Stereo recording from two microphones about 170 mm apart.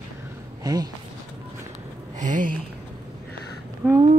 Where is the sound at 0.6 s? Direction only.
20° right (ahead or behind).